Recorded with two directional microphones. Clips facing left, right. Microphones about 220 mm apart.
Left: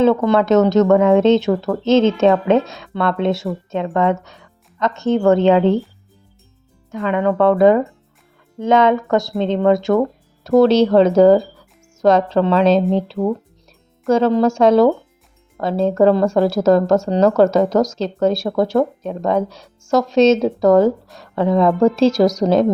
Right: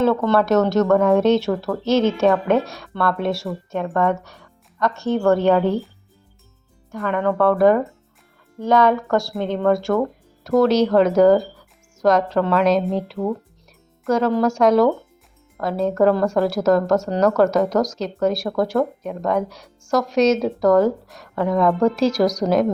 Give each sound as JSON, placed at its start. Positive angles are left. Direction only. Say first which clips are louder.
{"t": 0.0, "sound": "speech", "louder": "left 3 dB", "side_deg": 15}
{"t": 6.9, "sound": "speech", "louder": "left 3 dB", "side_deg": 20}